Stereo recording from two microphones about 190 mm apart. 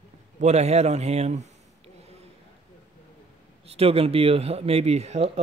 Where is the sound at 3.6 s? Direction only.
30° right (ahead or behind).